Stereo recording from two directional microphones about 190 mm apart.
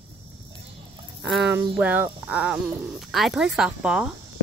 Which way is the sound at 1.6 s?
10° right (ahead or behind).